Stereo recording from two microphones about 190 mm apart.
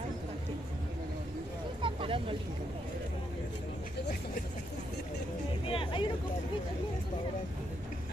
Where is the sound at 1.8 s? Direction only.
25° right (ahead or behind).